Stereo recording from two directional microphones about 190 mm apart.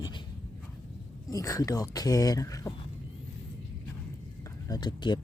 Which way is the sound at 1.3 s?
20° left (ahead or behind).